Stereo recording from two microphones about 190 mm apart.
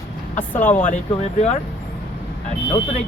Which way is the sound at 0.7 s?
40° left (ahead or behind).